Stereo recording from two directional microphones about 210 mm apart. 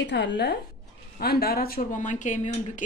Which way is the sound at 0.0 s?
55° left (ahead or behind).